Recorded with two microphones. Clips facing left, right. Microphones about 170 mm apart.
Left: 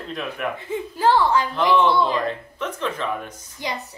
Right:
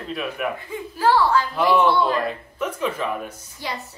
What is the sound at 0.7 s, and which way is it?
Speech, 20° left (ahead or behind).